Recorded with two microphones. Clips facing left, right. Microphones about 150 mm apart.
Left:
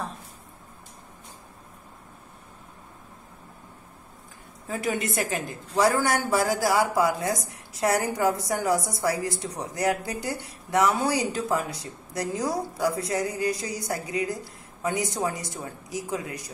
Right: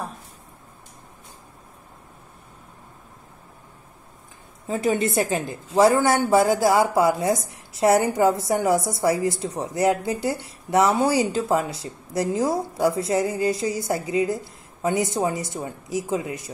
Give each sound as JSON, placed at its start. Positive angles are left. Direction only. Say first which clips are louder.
{"t": 4.6, "sound": "a woman's voice", "louder": "right 6 dB", "side_deg": -25}